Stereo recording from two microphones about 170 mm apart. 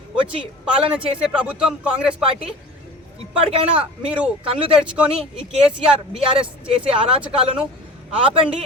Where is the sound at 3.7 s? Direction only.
5° right (ahead or behind).